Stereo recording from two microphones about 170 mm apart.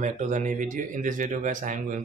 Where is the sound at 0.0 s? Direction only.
45° right (ahead or behind).